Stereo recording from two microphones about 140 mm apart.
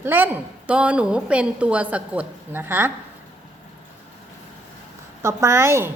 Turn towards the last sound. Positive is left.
turn(degrees=-20)  # may be behind; listen again after turning